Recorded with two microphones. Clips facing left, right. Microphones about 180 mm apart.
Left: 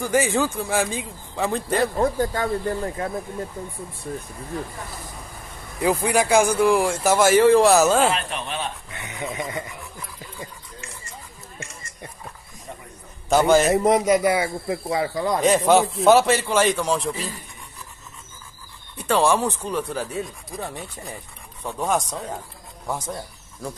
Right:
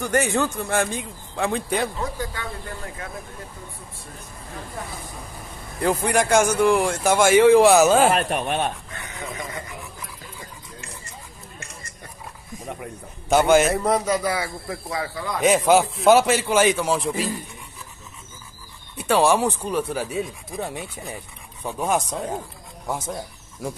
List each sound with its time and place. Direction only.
0.0 s speech: centre (ahead or behind)
2.0 s speech: 45° left (ahead or behind)
5.8 s speech: 5° left (ahead or behind)
8.1 s speech: 50° right (ahead or behind)
8.9 s fowl: 20° left (ahead or behind)
13.3 s speech: centre (ahead or behind)
13.7 s speech: 20° left (ahead or behind)
15.4 s speech: centre (ahead or behind)
18.9 s speech: 5° right (ahead or behind)